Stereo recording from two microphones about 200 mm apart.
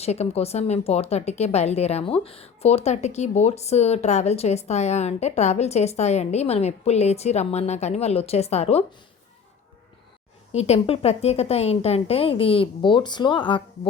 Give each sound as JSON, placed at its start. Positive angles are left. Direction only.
{"t": 0.0, "sound": "a woman's voice", "side_deg": 30}
{"t": 10.5, "sound": "a woman's voice", "side_deg": 30}